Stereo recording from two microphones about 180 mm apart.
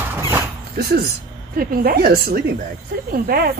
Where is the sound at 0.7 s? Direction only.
60° right (ahead or behind).